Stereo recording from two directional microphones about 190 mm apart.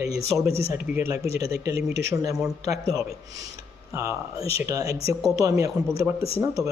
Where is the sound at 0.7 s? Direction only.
15° right (ahead or behind).